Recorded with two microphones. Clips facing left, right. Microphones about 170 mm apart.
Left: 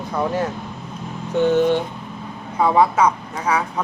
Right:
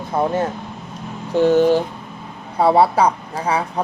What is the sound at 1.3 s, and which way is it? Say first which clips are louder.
Speech: right 3 dB; 35° right (ahead or behind).